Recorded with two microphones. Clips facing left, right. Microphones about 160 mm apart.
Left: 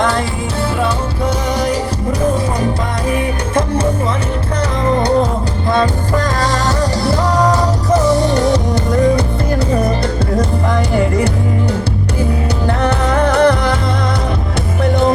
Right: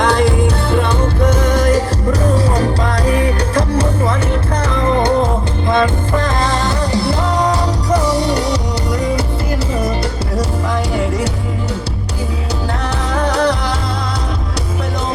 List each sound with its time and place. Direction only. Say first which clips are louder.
6.4 s music: left 1 dB; 40° left (ahead or behind)
8.3 s music: left 3 dB; 45° left (ahead or behind)
13.4 s music: left 4 dB; 55° left (ahead or behind)